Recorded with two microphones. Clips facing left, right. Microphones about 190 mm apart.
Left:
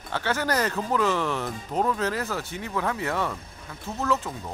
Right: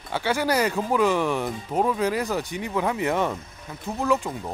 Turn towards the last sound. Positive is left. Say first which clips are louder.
# right 3 dB
turn(degrees=-15)  # may be behind; listen again after turning